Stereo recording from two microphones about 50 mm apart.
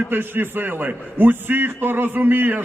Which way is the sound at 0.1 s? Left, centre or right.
Right.